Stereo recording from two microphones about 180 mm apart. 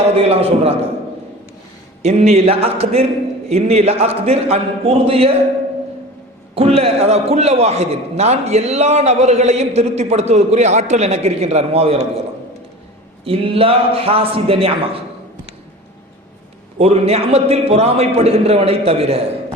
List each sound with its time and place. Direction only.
0.2 s a man's voice: 35° right (ahead or behind)
2.0 s a man's voice: 35° right (ahead or behind)
6.5 s a man's voice: 35° right (ahead or behind)
13.2 s a man's voice: 30° right (ahead or behind)
16.7 s a man's voice: 35° right (ahead or behind)